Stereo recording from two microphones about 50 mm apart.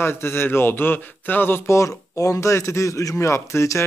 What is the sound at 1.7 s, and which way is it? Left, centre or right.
A man's voice, left.